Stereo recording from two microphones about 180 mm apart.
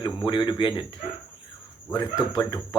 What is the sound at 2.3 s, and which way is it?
Speech, 20° left (ahead or behind).